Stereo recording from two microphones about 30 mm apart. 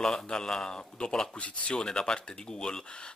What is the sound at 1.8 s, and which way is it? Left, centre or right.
Speech, left.